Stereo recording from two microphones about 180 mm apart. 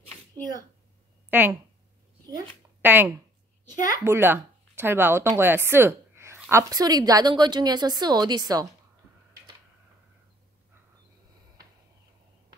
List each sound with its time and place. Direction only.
1.3 s speech: 10° right (ahead or behind)
2.2 s speech: 20° right (ahead or behind)
2.8 s a child's voice: 10° right (ahead or behind)